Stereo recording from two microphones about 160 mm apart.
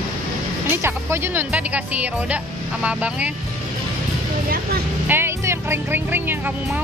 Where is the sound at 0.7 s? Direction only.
15° right (ahead or behind).